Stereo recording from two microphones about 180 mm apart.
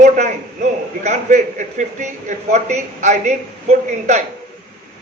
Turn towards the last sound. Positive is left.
turn(degrees=-40)  # may be behind; listen again after turning